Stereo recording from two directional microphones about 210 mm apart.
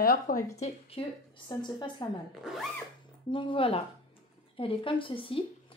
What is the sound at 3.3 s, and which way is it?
A woman's voice, 25° left (ahead or behind).